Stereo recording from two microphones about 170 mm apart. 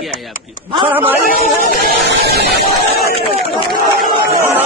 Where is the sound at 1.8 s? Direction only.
70° right (ahead or behind).